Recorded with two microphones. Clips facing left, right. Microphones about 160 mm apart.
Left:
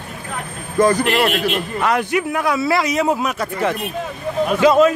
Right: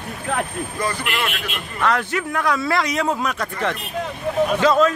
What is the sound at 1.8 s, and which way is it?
A man's voice, 15° left (ahead or behind).